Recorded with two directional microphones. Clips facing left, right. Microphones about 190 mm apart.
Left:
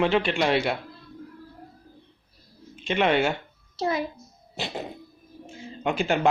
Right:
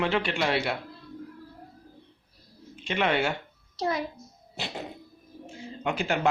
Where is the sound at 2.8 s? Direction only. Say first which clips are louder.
Left 4 dB; 20° left (ahead or behind).